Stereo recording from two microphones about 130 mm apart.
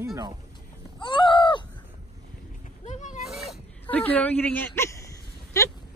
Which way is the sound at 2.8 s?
70° left (ahead or behind).